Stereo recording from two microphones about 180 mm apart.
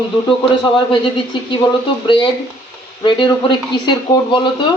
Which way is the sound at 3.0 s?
25° left (ahead or behind).